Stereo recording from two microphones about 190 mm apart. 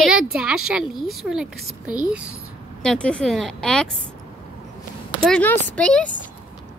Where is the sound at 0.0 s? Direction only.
5° right (ahead or behind).